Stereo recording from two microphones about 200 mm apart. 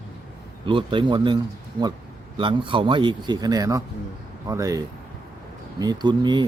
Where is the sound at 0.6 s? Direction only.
25° right (ahead or behind).